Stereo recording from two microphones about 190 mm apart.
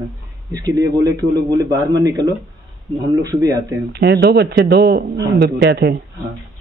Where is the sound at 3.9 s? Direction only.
60° right (ahead or behind).